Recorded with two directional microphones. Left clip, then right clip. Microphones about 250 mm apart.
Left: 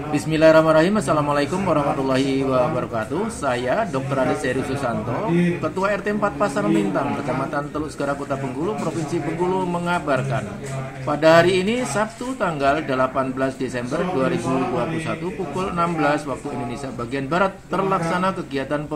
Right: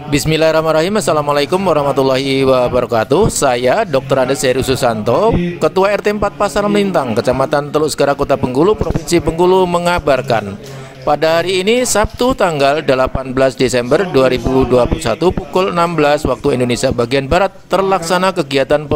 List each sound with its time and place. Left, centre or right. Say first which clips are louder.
0.1 s speech: right 3 dB; right